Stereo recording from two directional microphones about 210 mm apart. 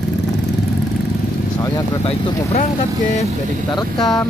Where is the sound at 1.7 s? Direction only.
30° left (ahead or behind).